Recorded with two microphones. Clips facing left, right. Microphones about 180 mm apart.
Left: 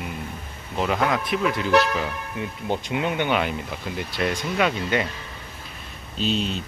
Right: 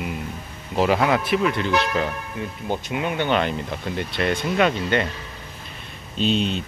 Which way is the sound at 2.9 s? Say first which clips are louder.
Right 1 dB; 20° left (ahead or behind).